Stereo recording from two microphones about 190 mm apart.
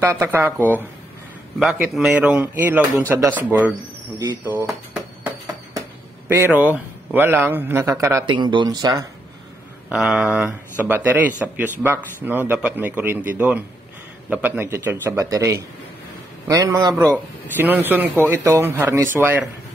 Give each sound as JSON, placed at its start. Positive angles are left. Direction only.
{"t": 0.0, "sound": "a man's voice", "side_deg": -10}
{"t": 1.6, "sound": "a man's voice", "side_deg": -5}
{"t": 4.6, "sound": "music", "side_deg": -5}
{"t": 6.2, "sound": "a man's voice", "side_deg": -10}
{"t": 9.8, "sound": "a man's voice", "side_deg": -5}